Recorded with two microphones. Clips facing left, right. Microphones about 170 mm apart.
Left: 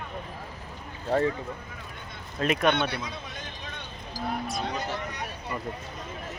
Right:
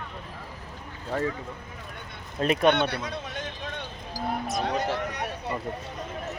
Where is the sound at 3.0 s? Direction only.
75° right (ahead or behind).